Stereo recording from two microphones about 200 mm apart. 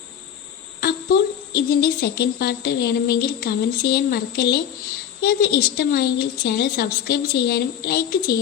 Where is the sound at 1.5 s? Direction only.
50° left (ahead or behind).